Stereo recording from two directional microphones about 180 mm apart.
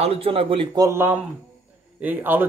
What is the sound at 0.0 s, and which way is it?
Speech, 35° right (ahead or behind).